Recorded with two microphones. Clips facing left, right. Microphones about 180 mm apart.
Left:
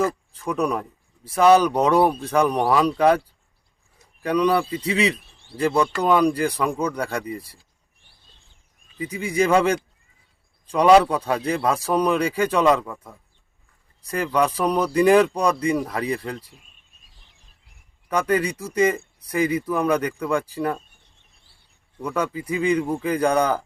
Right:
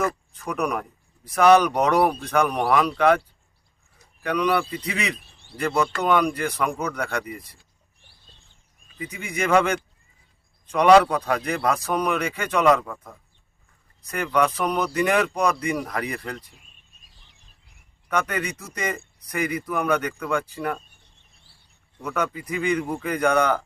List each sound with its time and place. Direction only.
0.0 s speech: 30° left (ahead or behind)
4.2 s speech: 30° left (ahead or behind)
9.0 s speech: 30° left (ahead or behind)
14.0 s speech: 30° left (ahead or behind)
18.1 s speech: 30° left (ahead or behind)
22.0 s speech: 30° left (ahead or behind)